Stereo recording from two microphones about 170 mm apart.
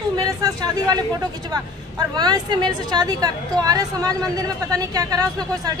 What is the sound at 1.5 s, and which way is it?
Speech, 25° right (ahead or behind).